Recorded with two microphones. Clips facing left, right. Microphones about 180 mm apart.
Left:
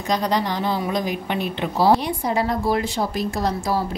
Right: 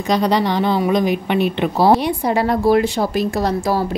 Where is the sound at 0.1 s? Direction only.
70° right (ahead or behind).